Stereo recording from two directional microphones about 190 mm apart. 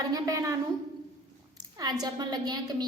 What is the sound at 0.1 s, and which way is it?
Speech, 15° right (ahead or behind).